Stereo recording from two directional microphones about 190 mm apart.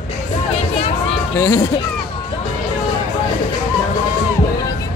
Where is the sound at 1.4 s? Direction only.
15° left (ahead or behind).